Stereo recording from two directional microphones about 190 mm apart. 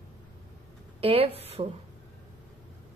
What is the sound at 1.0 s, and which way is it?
Speech, 30° right (ahead or behind).